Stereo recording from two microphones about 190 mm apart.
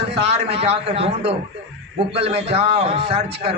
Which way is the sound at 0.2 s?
35° right (ahead or behind).